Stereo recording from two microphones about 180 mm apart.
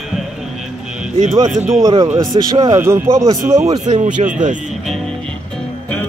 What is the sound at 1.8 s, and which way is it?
A man's voice, 20° right (ahead or behind).